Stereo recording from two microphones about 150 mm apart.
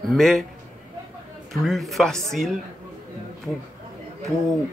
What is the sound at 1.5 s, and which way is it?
Speech, centre (ahead or behind).